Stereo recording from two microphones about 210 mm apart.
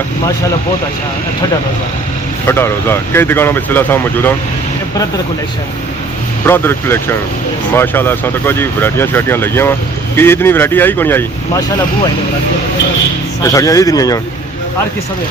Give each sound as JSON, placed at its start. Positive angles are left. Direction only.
{"t": 2.5, "sound": "speech", "side_deg": 10}
{"t": 6.4, "sound": "speech", "side_deg": 10}
{"t": 13.4, "sound": "speech", "side_deg": 15}